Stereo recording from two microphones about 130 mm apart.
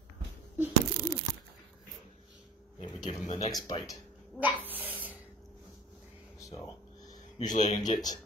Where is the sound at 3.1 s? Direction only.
55° left (ahead or behind).